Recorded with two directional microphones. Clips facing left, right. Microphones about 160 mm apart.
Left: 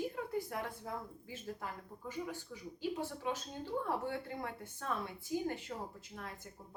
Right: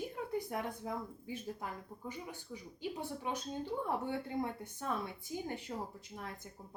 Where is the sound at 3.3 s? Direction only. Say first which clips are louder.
Right 3 dB; 20° right (ahead or behind).